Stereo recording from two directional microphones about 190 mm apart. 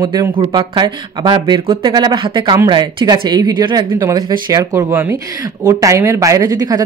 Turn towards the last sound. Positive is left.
turn(degrees=-20)  # may be behind; listen again after turning